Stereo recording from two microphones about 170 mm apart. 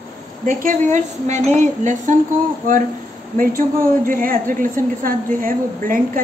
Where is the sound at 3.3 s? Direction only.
55° right (ahead or behind).